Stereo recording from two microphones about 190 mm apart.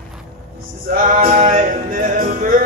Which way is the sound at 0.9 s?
50° right (ahead or behind).